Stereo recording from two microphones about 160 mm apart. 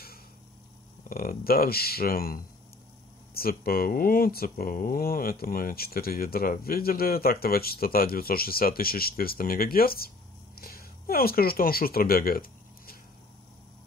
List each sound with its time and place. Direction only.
1.0 s speech: 65° left (ahead or behind)